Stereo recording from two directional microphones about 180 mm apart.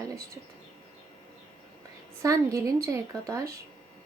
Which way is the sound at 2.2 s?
15° right (ahead or behind).